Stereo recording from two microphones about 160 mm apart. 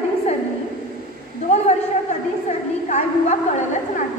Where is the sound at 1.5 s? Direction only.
45° left (ahead or behind).